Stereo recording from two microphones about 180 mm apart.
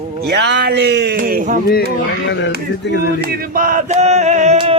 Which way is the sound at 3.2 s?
55° right (ahead or behind).